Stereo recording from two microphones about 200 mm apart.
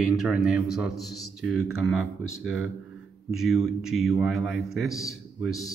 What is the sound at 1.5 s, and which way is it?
Speech, 90° left.